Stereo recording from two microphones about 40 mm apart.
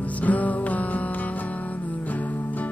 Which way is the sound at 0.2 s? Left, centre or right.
Left.